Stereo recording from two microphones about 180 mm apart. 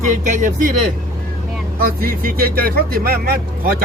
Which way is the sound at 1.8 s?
55° right (ahead or behind).